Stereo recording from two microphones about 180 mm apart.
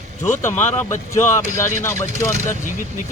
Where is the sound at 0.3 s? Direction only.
15° left (ahead or behind).